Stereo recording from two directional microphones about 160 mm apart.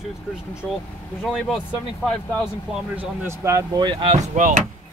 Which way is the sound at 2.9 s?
15° right (ahead or behind).